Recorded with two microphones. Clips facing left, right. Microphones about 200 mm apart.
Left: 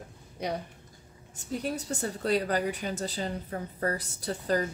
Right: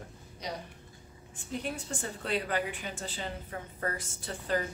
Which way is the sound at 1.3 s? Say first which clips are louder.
Left 4 dB; 40° left (ahead or behind).